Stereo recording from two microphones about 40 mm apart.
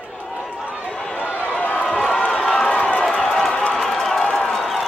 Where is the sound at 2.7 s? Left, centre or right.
Left.